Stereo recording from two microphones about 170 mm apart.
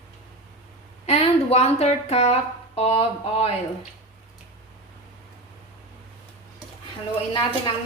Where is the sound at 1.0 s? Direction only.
40° left (ahead or behind).